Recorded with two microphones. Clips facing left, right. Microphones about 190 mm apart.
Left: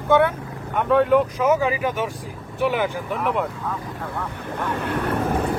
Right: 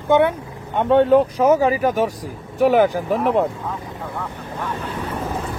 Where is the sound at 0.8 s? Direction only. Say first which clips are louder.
Right 3 dB; 30° right (ahead or behind).